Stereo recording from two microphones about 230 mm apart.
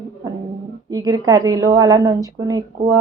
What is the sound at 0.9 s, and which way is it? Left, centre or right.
A woman's voice, centre.